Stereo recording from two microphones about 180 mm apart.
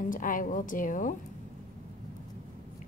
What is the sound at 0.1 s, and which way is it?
A woman's voice, 50° left (ahead or behind).